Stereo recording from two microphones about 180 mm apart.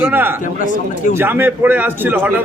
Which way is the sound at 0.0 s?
10° right (ahead or behind).